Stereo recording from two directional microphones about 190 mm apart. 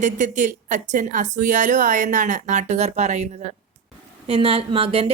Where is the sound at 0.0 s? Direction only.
40° right (ahead or behind).